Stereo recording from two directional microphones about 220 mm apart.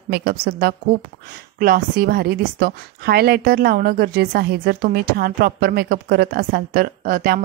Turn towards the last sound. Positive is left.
turn(degrees=-40)  # may be behind; listen again after turning